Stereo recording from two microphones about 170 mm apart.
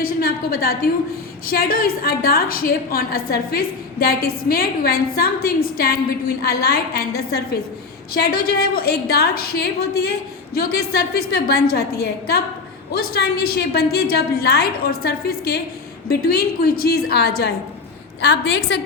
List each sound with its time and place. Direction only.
0.0 s a woman's voice: 60° left (ahead or behind)
18.2 s a woman's voice: 90° left